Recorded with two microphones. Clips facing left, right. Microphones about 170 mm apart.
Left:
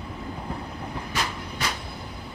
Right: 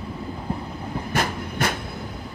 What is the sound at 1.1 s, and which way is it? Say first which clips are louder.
Train: right 7 dB; 55° right (ahead or behind).